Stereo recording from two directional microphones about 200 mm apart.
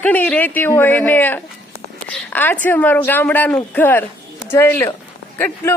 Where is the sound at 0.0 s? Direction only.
10° left (ahead or behind).